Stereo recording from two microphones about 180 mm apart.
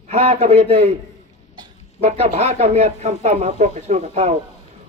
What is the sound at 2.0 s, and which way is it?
Speech, 35° right (ahead or behind).